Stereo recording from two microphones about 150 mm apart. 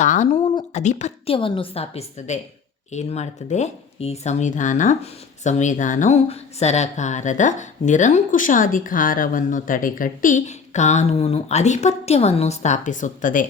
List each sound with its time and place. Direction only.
0.0 s a woman's voice: 55° left (ahead or behind)
1.4 s a woman's voice: 35° left (ahead or behind); by 6.1 s 55° left (ahead or behind)
6.2 s a woman's voice: 45° left (ahead or behind); by 13.5 s 60° left (ahead or behind)